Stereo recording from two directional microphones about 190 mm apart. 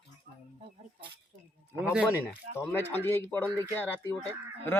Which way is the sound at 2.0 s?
10° left (ahead or behind).